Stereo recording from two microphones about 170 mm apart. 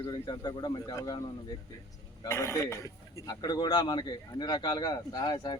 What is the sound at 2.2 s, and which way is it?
A man's voice, 15° left (ahead or behind).